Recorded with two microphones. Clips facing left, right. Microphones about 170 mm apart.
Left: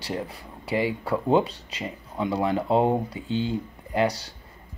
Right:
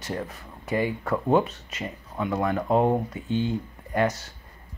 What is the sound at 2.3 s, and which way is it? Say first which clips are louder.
Speech: even; 30° left (ahead or behind).